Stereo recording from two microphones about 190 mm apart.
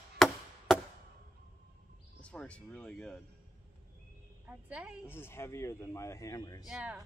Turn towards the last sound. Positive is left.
turn(degrees=-5)  # may be behind; listen again after turning